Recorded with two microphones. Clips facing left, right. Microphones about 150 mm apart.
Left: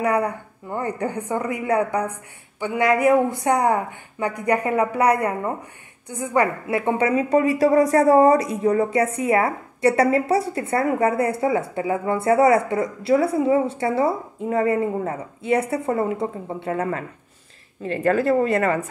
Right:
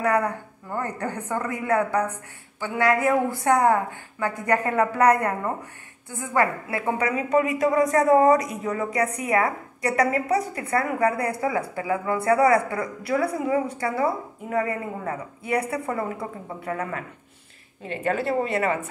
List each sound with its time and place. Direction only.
0.0 s a woman's voice: 10° left (ahead or behind); by 16.8 s 30° left (ahead or behind)
17.8 s speech: 40° left (ahead or behind)